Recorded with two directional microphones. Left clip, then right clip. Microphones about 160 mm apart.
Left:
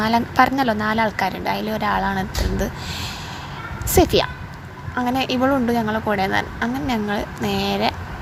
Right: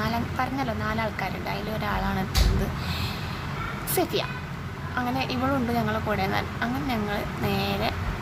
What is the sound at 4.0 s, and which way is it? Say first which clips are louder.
A woman's voice: left 11 dB; 45° left (ahead or behind).